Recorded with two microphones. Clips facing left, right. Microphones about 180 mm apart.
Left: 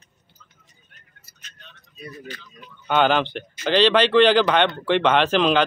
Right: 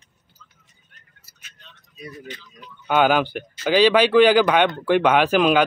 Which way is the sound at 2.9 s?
5° right (ahead or behind).